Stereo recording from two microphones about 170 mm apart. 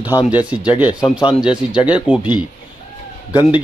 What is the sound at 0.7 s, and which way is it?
Speech, 5° right (ahead or behind).